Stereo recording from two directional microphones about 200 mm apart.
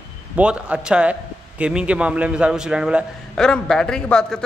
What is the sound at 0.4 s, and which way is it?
A man's voice, 5° right (ahead or behind).